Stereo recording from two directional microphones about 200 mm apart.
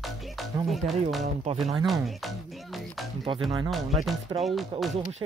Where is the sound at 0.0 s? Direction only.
Centre (ahead or behind).